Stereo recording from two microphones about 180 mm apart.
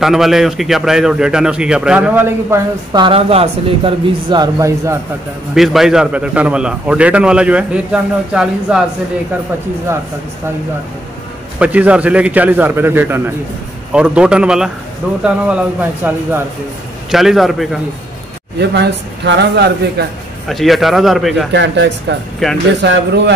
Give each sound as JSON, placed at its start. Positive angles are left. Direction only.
{"t": 0.0, "sound": "a man's voice", "side_deg": 0}
{"t": 2.9, "sound": "speech", "side_deg": -25}
{"t": 5.5, "sound": "a man's voice", "side_deg": 0}
{"t": 11.6, "sound": "a man's voice", "side_deg": -5}
{"t": 18.6, "sound": "a man's voice", "side_deg": -70}
{"t": 20.4, "sound": "a man's voice", "side_deg": 0}
{"t": 21.5, "sound": "a man's voice", "side_deg": -80}
{"t": 22.4, "sound": "a man's voice", "side_deg": 0}
{"t": 22.8, "sound": "a man's voice", "side_deg": -75}